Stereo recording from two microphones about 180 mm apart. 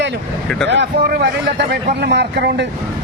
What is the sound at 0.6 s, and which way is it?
Speech, 70° right (ahead or behind).